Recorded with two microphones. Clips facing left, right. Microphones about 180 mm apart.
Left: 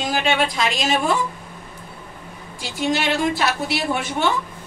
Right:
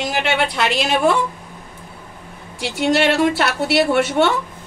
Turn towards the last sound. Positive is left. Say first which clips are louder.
# right 6 dB
turn(degrees=-75)  # may be behind; listen again after turning